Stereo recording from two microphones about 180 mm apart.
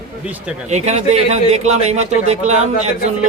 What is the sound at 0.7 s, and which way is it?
A man's voice, 40° right (ahead or behind).